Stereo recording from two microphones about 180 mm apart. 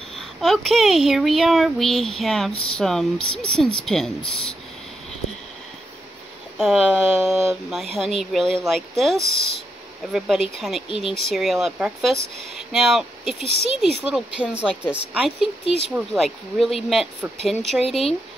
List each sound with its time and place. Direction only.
0.1 s a child's voice: centre (ahead or behind)
6.6 s a child's voice: centre (ahead or behind)
10.1 s a child's voice: centre (ahead or behind)
13.4 s speech: 35° right (ahead or behind)
13.7 s a child's voice: centre (ahead or behind)